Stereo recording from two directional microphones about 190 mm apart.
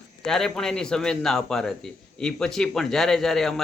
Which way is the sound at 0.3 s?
5° left (ahead or behind).